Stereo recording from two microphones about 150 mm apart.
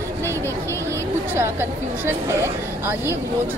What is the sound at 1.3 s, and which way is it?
A woman's voice, 15° right (ahead or behind).